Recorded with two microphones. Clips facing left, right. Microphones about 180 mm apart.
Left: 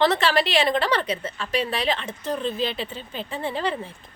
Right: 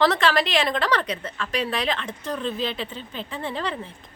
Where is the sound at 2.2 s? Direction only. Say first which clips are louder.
Left 2 dB; 25° left (ahead or behind).